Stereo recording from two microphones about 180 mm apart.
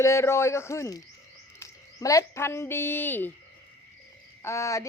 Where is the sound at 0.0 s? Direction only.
15° left (ahead or behind).